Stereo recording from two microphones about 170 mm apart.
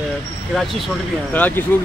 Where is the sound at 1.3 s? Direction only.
10° left (ahead or behind).